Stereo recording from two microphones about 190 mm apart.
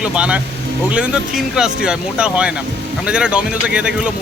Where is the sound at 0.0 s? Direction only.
5° right (ahead or behind).